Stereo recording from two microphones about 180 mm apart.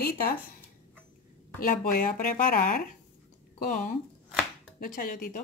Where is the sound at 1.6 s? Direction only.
50° left (ahead or behind).